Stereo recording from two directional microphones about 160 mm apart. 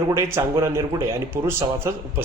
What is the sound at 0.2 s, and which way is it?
Speech, 20° right (ahead or behind).